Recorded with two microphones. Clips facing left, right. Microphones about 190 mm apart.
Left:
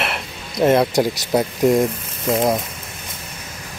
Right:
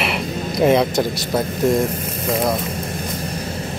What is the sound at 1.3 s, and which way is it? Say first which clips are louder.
Speech: left 2 dB; 15° left (ahead or behind).